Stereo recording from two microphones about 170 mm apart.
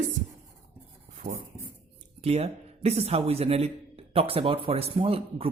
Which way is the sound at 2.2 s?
35° right (ahead or behind).